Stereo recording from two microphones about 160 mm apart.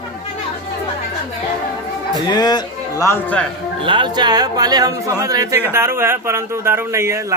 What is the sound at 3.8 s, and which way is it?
A man's voice, 30° right (ahead or behind).